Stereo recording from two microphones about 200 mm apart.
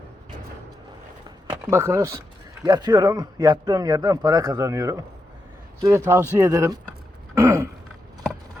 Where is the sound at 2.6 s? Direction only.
20° right (ahead or behind).